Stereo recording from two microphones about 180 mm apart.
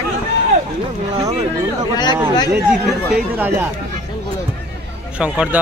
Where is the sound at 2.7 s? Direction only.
5° right (ahead or behind).